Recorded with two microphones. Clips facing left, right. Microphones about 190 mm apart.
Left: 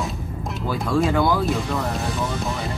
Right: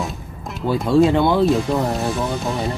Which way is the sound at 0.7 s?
25° right (ahead or behind).